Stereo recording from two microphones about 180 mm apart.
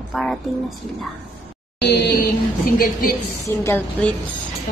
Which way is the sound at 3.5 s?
15° left (ahead or behind).